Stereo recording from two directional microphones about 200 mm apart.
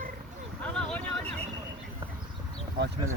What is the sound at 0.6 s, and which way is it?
Vehicle, 5° left (ahead or behind).